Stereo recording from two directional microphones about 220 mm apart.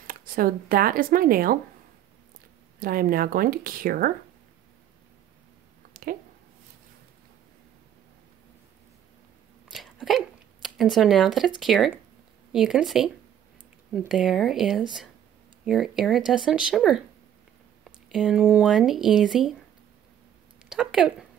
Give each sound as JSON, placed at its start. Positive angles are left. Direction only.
{"t": 0.0, "sound": "speech", "side_deg": -40}
{"t": 2.8, "sound": "speech", "side_deg": -40}
{"t": 9.7, "sound": "a sound", "side_deg": 0}
{"t": 11.6, "sound": "speech", "side_deg": 0}
{"t": 20.7, "sound": "speech", "side_deg": 0}